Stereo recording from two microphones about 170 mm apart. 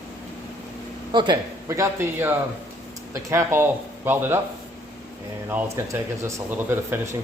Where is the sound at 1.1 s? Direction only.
25° right (ahead or behind).